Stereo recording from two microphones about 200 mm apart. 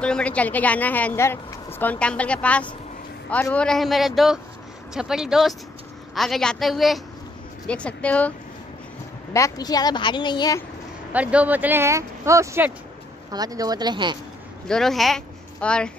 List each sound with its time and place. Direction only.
0.0 s a woman's voice: 5° left (ahead or behind)
9.3 s a woman's voice: 15° left (ahead or behind)
11.1 s speech: 5° right (ahead or behind)
14.7 s a woman's voice: centre (ahead or behind)